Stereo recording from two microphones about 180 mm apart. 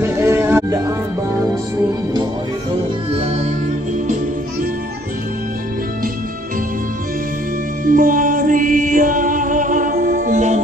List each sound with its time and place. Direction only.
0.0 s music: 15° right (ahead or behind)
7.8 s music: 50° right (ahead or behind)